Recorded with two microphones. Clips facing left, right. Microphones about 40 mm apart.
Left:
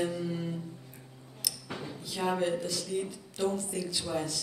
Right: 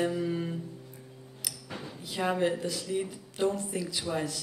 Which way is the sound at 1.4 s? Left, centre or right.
Right.